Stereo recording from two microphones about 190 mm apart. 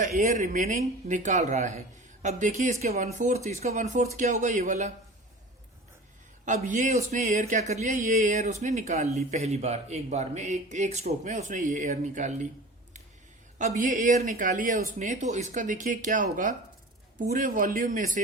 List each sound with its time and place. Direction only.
0.0 s speech: 40° right (ahead or behind)
6.4 s speech: 40° right (ahead or behind)
13.6 s speech: 45° right (ahead or behind)